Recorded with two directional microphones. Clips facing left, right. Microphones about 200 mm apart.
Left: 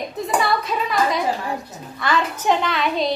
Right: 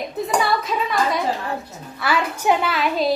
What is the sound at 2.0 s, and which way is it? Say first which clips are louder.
A woman's voice: even; 10° right (ahead or behind).